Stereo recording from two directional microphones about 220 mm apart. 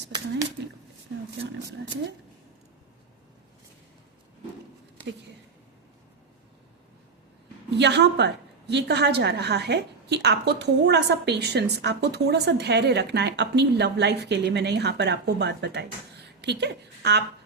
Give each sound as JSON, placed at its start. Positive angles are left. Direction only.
{"t": 7.7, "sound": "a woman's voice", "side_deg": -50}